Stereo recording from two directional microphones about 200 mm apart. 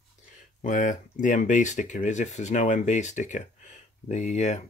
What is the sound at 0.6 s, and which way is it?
Speech, 40° left (ahead or behind).